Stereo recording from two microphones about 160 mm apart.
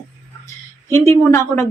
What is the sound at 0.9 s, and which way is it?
Speech, 15° left (ahead or behind).